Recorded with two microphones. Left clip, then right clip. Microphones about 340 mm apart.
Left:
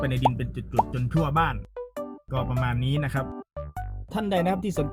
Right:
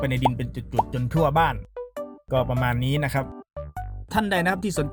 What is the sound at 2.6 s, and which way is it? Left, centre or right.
Speech, centre.